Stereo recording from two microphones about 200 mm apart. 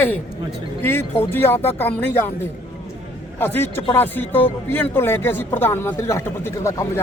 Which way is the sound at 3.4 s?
10° left (ahead or behind).